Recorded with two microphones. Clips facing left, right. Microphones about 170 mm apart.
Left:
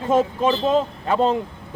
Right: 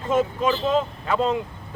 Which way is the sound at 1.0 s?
30° left (ahead or behind).